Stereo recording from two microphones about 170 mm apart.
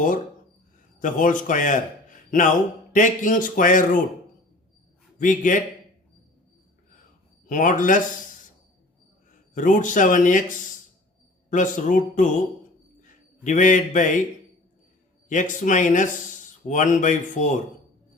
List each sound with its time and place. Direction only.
0.9 s speech: 50° left (ahead or behind)
2.9 s speech: 50° left (ahead or behind)
5.2 s speech: 50° left (ahead or behind)
7.4 s speech: 50° left (ahead or behind)
9.6 s a man's voice: 50° left (ahead or behind)
15.3 s speech: 50° left (ahead or behind)